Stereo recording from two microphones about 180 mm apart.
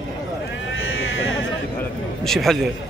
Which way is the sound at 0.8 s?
90° left.